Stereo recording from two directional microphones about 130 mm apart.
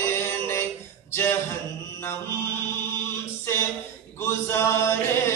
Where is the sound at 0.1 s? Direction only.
20° left (ahead or behind).